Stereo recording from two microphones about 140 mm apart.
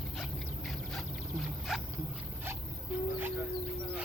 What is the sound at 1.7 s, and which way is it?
Speech, 5° right (ahead or behind).